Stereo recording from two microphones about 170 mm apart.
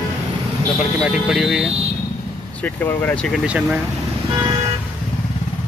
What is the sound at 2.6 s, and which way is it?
Speech, 10° left (ahead or behind).